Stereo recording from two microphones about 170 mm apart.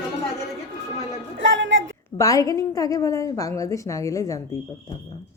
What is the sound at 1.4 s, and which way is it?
Speech, 90° right.